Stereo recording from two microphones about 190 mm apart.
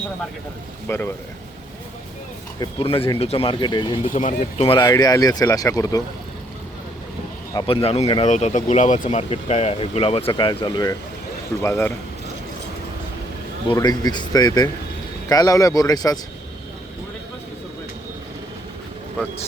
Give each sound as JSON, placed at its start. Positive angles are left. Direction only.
{"t": 0.9, "sound": "a man's voice", "side_deg": 10}
{"t": 2.6, "sound": "speech", "side_deg": 30}
{"t": 4.0, "sound": "speech", "side_deg": 40}
{"t": 4.5, "sound": "speech", "side_deg": 30}
{"t": 7.7, "sound": "speech", "side_deg": 30}
{"t": 11.6, "sound": "a man's voice", "side_deg": 10}
{"t": 13.7, "sound": "speech", "side_deg": 20}